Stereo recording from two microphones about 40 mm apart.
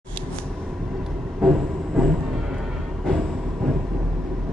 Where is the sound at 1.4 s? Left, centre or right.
Centre.